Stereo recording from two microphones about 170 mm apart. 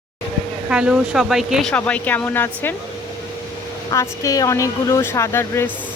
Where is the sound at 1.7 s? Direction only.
10° left (ahead or behind).